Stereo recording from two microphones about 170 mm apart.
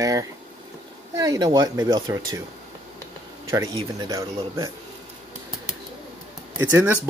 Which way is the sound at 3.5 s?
20° right (ahead or behind).